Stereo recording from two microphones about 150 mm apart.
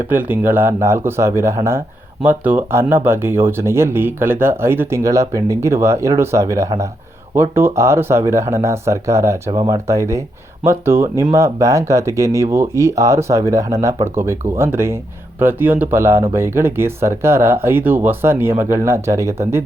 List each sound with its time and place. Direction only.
0.1 s speech: 15° right (ahead or behind)